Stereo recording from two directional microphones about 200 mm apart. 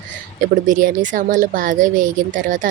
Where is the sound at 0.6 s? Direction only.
40° right (ahead or behind).